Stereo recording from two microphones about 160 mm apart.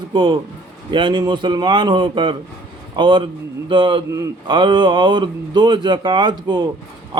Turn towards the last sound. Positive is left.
turn(degrees=-25)  # may be behind; listen again after turning